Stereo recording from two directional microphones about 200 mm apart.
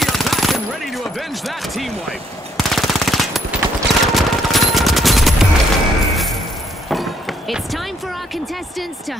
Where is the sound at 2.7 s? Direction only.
Centre (ahead or behind).